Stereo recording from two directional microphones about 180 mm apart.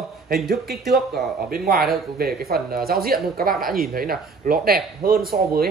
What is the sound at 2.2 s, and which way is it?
Speech, 60° right (ahead or behind).